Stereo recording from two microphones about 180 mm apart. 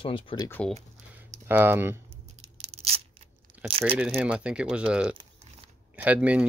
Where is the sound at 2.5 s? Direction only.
35° right (ahead or behind).